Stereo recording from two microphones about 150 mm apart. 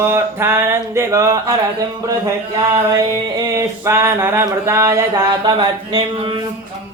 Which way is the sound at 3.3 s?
20° right (ahead or behind).